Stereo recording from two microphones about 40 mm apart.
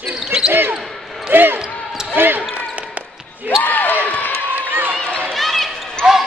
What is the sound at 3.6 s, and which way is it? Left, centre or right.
Basketball bounce, left.